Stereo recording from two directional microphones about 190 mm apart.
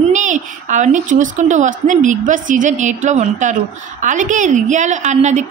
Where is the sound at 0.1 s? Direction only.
40° right (ahead or behind).